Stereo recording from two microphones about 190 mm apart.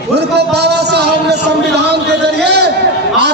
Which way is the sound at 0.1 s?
60° right (ahead or behind).